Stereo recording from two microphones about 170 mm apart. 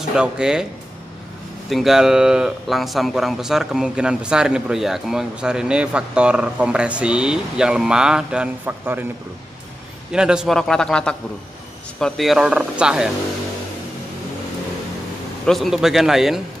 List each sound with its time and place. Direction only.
0.1 s speech: 5° right (ahead or behind)
1.7 s speech: centre (ahead or behind)
10.1 s speech: 5° right (ahead or behind)
15.4 s speech: centre (ahead or behind)